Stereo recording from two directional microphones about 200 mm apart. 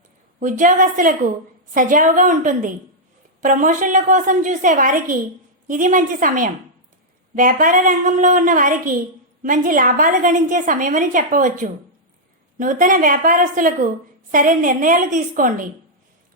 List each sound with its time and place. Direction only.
0.3 s a woman's voice: 40° right (ahead or behind)